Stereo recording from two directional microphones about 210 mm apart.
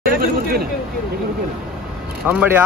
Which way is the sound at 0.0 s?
45° right (ahead or behind).